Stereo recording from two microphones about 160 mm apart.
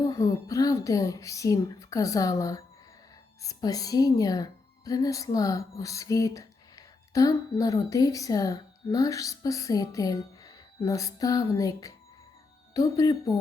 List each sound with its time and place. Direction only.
0.0 s speech: 20° left (ahead or behind)